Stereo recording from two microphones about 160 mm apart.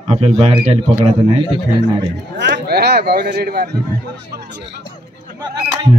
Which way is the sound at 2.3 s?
90° right.